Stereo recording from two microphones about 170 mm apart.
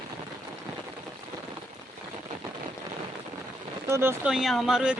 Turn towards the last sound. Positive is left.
turn(degrees=-5)  # may be behind; listen again after turning